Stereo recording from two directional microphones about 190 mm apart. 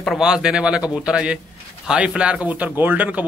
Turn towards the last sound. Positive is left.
turn(degrees=-10)  # may be behind; listen again after turning